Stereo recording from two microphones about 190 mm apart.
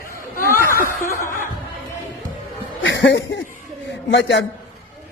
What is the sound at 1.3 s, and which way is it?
Music, 45° left (ahead or behind).